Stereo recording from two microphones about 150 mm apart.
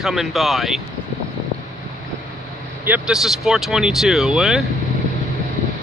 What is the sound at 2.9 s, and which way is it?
Speech, 5° right (ahead or behind).